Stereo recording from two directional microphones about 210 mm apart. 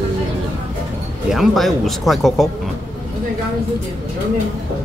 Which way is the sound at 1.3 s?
Centre (ahead or behind).